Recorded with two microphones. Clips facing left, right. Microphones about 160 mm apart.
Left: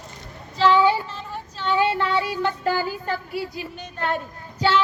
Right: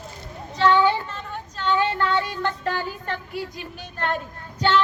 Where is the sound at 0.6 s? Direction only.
10° left (ahead or behind).